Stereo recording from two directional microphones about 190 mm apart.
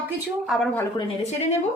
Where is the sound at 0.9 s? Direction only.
35° left (ahead or behind).